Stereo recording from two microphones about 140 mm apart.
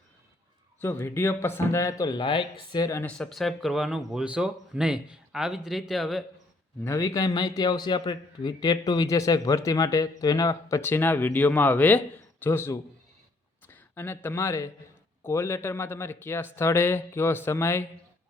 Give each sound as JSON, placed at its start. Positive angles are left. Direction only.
{"t": 0.8, "sound": "a man's voice", "side_deg": 15}
{"t": 3.0, "sound": "speech", "side_deg": 5}
{"t": 6.8, "sound": "a man's voice", "side_deg": 20}